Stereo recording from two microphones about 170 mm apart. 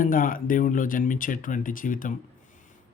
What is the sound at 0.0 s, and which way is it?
Speech, 55° left (ahead or behind).